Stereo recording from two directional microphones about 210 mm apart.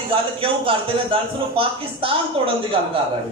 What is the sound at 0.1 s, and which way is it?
A woman's voice, 25° right (ahead or behind).